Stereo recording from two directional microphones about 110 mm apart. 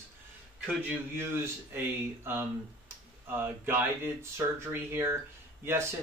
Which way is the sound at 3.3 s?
20° right (ahead or behind).